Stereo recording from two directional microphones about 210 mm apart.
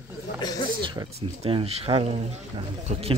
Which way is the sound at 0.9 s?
25° right (ahead or behind).